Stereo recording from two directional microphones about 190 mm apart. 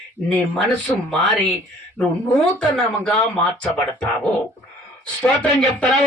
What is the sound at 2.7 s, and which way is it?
Speech, 5° left (ahead or behind).